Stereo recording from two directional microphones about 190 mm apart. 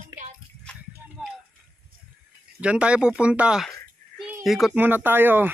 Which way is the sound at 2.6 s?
5° right (ahead or behind).